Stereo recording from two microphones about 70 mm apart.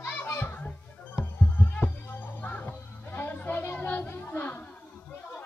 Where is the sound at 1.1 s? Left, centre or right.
Left.